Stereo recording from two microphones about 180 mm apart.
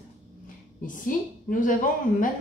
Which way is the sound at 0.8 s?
50° left (ahead or behind).